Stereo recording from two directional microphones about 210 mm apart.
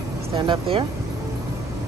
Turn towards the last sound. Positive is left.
turn(degrees=-25)  # may be behind; listen again after turning